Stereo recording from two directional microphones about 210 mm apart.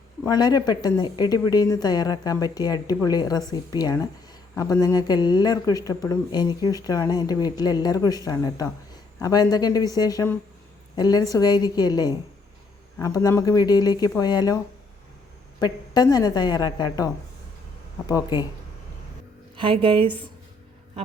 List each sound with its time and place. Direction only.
0.3 s speech: 20° left (ahead or behind)
15.6 s speech: 20° left (ahead or behind)
18.0 s speech: 20° left (ahead or behind)
19.5 s a woman's voice: 25° right (ahead or behind)